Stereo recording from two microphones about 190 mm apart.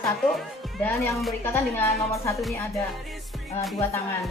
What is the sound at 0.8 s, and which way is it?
A woman's voice, 10° left (ahead or behind).